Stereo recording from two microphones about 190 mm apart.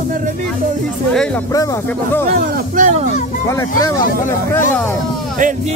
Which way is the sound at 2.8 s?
40° right (ahead or behind).